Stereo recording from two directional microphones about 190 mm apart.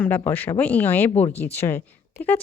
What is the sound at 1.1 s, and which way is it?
Speech, 35° left (ahead or behind).